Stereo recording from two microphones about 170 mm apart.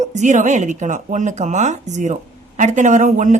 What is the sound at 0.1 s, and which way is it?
Speech, 45° right (ahead or behind).